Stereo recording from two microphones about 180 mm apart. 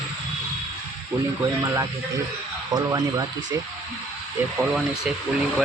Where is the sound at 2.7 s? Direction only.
20° right (ahead or behind).